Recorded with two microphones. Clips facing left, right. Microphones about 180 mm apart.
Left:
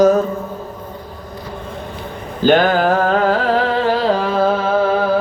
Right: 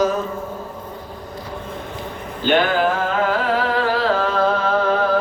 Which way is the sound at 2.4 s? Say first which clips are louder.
Left 4 dB; 40° left (ahead or behind).